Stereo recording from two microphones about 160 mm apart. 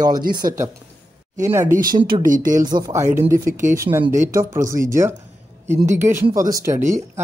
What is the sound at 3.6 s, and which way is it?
Speech, 15° right (ahead or behind).